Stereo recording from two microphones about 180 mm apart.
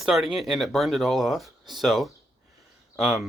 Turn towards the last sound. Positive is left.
turn(degrees=0)  # may be behind; listen again after turning